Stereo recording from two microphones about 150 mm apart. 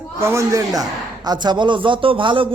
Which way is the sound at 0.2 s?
20° right (ahead or behind).